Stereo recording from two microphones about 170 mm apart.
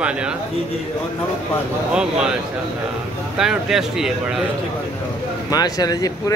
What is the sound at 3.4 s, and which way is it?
Speech, 5° right (ahead or behind).